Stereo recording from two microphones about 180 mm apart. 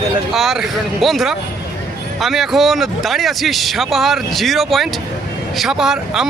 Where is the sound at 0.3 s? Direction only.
Centre (ahead or behind).